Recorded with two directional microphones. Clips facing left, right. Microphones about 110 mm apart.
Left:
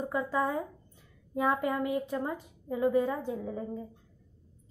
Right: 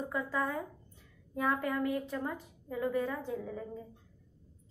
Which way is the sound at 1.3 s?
15° left (ahead or behind).